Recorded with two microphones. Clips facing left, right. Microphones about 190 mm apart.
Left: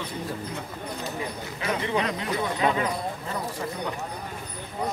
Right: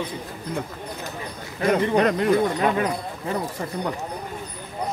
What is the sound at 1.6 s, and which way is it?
Speech, 50° right (ahead or behind).